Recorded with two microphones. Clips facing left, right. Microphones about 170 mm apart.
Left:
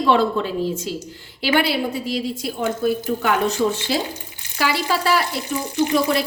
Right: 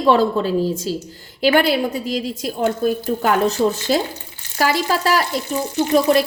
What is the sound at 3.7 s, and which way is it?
Speech, 45° right (ahead or behind).